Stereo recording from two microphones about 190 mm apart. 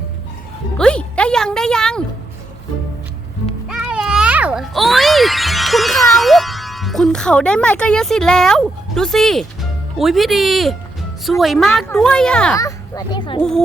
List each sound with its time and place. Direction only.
0.8 s music: 5° left (ahead or behind)
3.7 s music: 5° right (ahead or behind)
11.3 s speech: centre (ahead or behind)
12.5 s speech: 20° left (ahead or behind)